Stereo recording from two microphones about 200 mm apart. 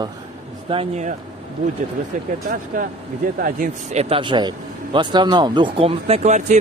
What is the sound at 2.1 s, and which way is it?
Speech, 40° right (ahead or behind).